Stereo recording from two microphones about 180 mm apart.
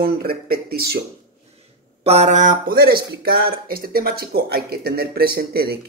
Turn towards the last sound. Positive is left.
turn(degrees=-60)  # may be behind; listen again after turning